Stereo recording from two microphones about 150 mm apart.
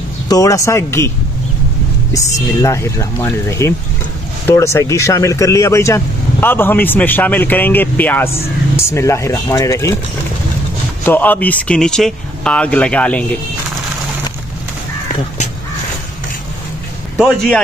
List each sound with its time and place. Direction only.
0.3 s speech: 20° left (ahead or behind)
2.6 s speech: 20° left (ahead or behind)
11.1 s speech: 10° left (ahead or behind)
17.2 s speech: centre (ahead or behind)